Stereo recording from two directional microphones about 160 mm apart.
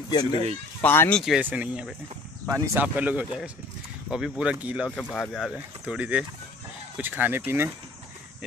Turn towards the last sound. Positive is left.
turn(degrees=-15)  # may be behind; listen again after turning